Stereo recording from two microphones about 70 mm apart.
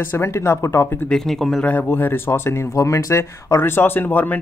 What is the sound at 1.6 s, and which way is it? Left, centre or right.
Speech, left.